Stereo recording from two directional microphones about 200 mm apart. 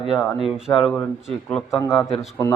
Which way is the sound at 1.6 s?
15° left (ahead or behind).